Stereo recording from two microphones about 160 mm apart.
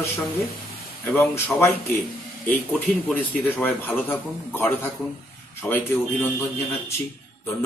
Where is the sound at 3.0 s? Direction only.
10° left (ahead or behind).